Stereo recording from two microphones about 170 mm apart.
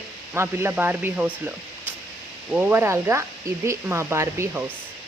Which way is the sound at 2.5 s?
15° right (ahead or behind).